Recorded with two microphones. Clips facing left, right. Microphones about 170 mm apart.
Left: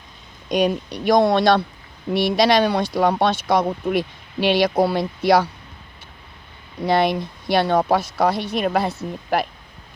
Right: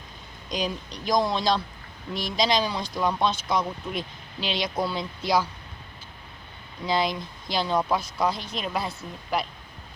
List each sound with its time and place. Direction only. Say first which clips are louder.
0.4 s speech: left 10 dB; 65° left (ahead or behind)
6.8 s speech: left 7 dB; 65° left (ahead or behind)